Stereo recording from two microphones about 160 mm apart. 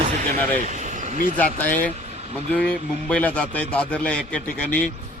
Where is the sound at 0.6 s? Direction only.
50° right (ahead or behind).